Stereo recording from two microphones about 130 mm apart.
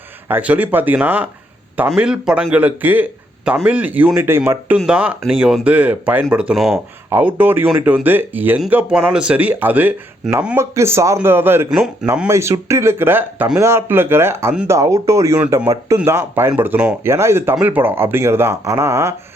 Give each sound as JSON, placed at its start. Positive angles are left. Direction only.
{"t": 0.3, "sound": "a man's voice", "side_deg": -15}
{"t": 7.3, "sound": "a man's voice", "side_deg": -15}